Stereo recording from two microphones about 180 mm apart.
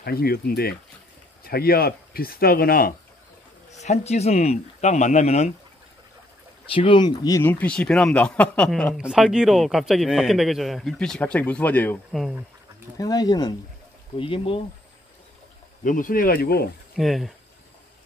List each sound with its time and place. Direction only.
0.0 s speech: 60° left (ahead or behind)
3.7 s speech: 40° left (ahead or behind)
6.7 s speech: 30° left (ahead or behind); by 12.4 s centre (ahead or behind)
12.9 s speech: 20° left (ahead or behind)
15.8 s speech: 45° left (ahead or behind)
16.9 s speech: centre (ahead or behind)